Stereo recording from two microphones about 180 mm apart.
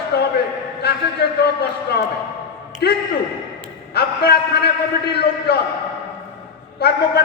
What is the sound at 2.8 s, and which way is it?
A man's voice, 65° left (ahead or behind).